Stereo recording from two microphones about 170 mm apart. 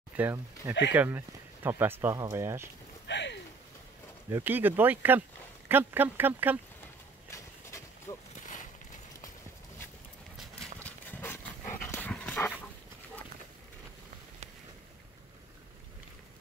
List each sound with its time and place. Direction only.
0.1 s speech: 10° right (ahead or behind)
3.1 s a sound: 90° left
4.3 s speech: 10° right (ahead or behind)
7.2 s horse: 20° left (ahead or behind)
10.8 s dog: 10° left (ahead or behind)